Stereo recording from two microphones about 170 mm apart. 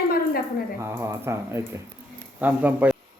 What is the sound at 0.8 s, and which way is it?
A man's voice, 15° right (ahead or behind).